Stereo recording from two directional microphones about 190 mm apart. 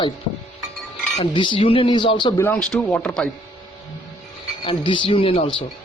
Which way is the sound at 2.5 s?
5° left (ahead or behind).